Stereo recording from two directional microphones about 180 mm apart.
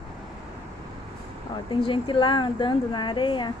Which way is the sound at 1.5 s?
20° left (ahead or behind).